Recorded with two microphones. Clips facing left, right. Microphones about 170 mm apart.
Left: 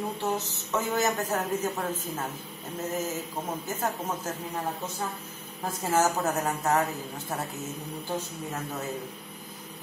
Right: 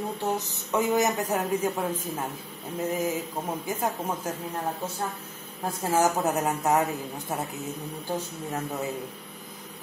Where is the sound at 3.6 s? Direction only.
15° right (ahead or behind).